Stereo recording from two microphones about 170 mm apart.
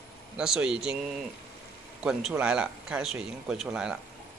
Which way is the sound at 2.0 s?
Centre (ahead or behind).